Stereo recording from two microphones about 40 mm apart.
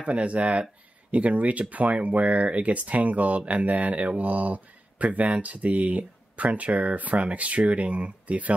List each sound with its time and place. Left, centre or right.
0.0 s speech: right